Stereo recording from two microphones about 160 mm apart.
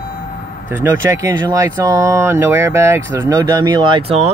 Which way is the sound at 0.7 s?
15° right (ahead or behind).